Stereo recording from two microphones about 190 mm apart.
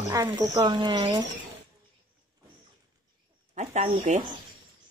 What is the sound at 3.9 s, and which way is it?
Speech, 35° right (ahead or behind).